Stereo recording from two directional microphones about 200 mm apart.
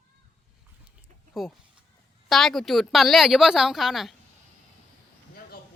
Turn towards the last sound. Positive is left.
turn(degrees=0)  # may be behind; listen again after turning